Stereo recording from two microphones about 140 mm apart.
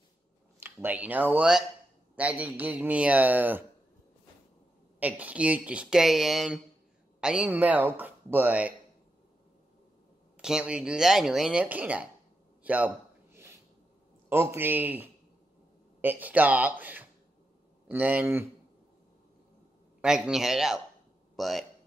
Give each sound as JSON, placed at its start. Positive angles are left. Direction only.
{"t": 0.6, "sound": "speech", "side_deg": -15}
{"t": 5.0, "sound": "speech", "side_deg": -10}
{"t": 10.4, "sound": "speech", "side_deg": -5}
{"t": 12.6, "sound": "a sound", "side_deg": -10}
{"t": 14.3, "sound": "speech", "side_deg": -15}
{"t": 20.0, "sound": "speech", "side_deg": -5}